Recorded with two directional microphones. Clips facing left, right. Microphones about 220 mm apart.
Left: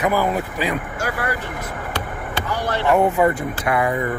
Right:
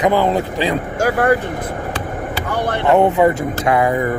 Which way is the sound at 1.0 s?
45° right (ahead or behind).